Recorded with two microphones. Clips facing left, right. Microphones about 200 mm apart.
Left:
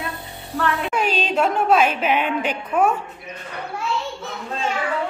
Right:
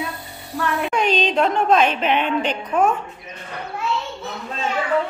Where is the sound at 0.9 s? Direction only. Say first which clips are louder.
Right 4 dB; 5° left (ahead or behind).